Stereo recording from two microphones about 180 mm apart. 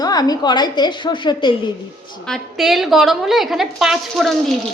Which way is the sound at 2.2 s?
Centre (ahead or behind).